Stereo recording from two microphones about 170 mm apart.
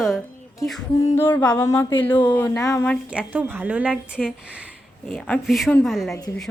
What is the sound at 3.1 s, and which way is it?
Speech, 10° right (ahead or behind).